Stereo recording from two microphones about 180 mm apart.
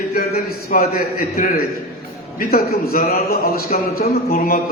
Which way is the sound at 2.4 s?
55° left (ahead or behind).